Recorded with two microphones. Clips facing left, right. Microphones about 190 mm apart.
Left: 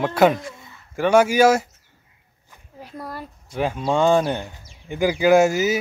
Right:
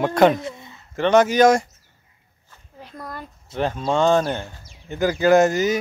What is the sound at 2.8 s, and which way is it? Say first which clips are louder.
Speech: left 2 dB; 5° left (ahead or behind).